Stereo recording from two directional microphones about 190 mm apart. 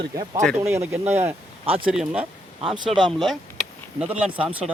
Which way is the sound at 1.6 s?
30° right (ahead or behind).